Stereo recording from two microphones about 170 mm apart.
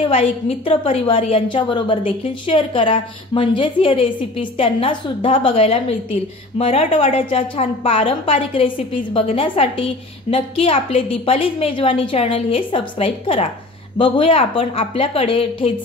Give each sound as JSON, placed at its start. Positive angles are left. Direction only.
{"t": 0.1, "sound": "a woman's voice", "side_deg": 35}